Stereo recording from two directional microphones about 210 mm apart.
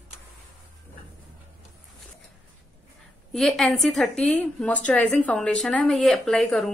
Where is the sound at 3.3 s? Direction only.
Centre (ahead or behind).